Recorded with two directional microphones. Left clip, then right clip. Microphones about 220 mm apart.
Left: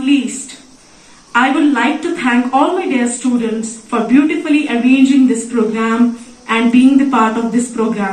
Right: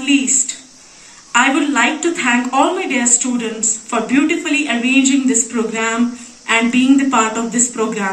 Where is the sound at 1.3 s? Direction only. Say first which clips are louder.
Left 2 dB; 50° right (ahead or behind).